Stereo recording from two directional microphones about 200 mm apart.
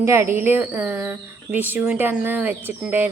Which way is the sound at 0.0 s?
15° right (ahead or behind).